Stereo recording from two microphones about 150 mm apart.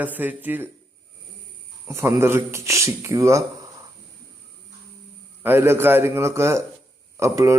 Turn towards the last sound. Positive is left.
turn(degrees=-20)  # may be behind; listen again after turning